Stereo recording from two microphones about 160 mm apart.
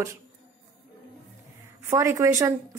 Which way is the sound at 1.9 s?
20° right (ahead or behind).